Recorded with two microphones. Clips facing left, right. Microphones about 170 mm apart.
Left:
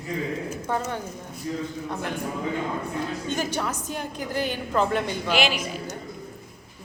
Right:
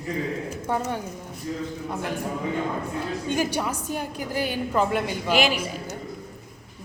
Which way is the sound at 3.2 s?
10° right (ahead or behind).